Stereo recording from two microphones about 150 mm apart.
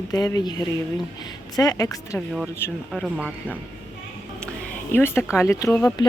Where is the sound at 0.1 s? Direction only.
25° left (ahead or behind).